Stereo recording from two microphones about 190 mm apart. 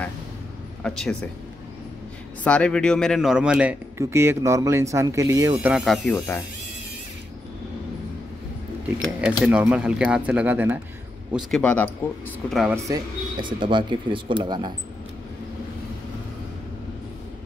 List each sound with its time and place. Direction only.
0.8 s speech: 5° left (ahead or behind)
2.4 s speech: 5° left (ahead or behind); by 5.5 s 15° right (ahead or behind)
5.6 s speech: 5° right (ahead or behind)
9.2 s speech: 5° right (ahead or behind)
11.3 s speech: 5° left (ahead or behind)
12.7 s speech: 20° right (ahead or behind)